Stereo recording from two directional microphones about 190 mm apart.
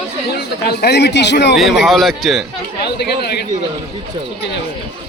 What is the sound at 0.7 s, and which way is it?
Speech, 60° left (ahead or behind).